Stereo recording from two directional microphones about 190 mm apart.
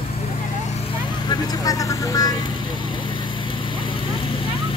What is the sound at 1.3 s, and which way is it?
Vehicle, 20° left (ahead or behind).